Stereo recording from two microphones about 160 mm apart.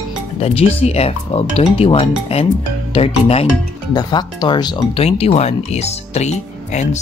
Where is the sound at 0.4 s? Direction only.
40° left (ahead or behind).